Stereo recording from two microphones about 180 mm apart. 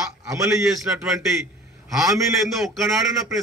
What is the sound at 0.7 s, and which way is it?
A man's voice, centre (ahead or behind).